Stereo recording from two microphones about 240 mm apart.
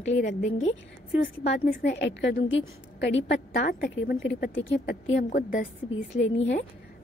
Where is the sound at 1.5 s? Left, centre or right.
Left.